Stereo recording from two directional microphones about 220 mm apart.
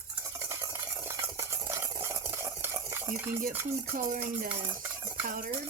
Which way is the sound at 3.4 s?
40° right (ahead or behind).